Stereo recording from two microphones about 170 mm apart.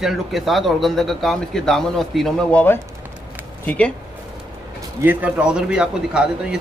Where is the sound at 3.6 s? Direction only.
10° left (ahead or behind).